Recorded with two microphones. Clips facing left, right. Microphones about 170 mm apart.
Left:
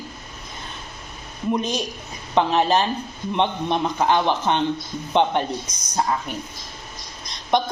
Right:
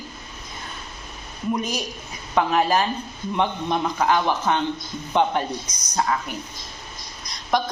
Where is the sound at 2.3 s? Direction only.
25° left (ahead or behind).